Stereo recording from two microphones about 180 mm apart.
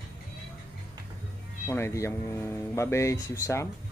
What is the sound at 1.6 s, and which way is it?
Speech, 15° left (ahead or behind).